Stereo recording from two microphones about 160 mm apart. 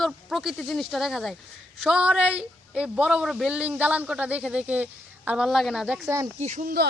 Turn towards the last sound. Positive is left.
turn(degrees=-50)  # may be behind; listen again after turning